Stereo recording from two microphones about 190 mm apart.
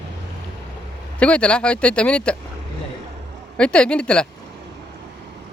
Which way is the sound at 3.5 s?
5° left (ahead or behind).